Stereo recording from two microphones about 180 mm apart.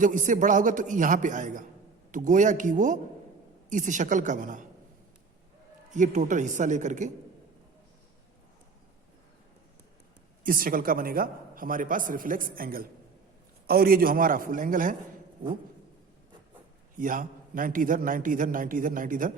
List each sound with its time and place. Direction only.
0.0 s speech: 45° right (ahead or behind)
5.9 s speech: 45° right (ahead or behind)
10.4 s speech: 50° right (ahead or behind)
17.0 s speech: 50° right (ahead or behind)